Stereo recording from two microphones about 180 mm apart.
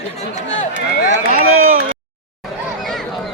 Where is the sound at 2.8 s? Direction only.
Centre (ahead or behind).